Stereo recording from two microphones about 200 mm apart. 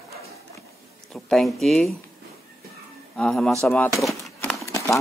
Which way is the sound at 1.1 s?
Centre (ahead or behind).